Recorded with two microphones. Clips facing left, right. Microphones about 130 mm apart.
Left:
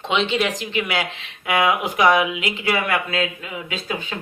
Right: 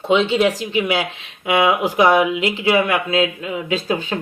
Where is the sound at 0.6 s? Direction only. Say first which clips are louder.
Right 4 dB; 25° right (ahead or behind).